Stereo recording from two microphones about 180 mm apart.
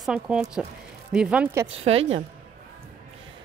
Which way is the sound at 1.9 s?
35° right (ahead or behind).